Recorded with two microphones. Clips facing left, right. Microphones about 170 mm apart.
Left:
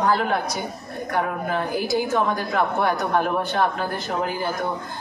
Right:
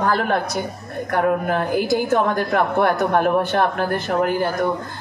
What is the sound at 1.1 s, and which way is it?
A woman's voice, 55° right (ahead or behind).